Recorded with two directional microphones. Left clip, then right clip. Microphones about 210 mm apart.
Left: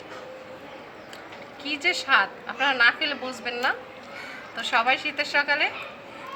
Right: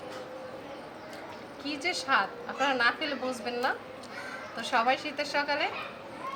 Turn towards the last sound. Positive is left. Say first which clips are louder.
# left 6 dB
turn(degrees=0)  # may be behind; listen again after turning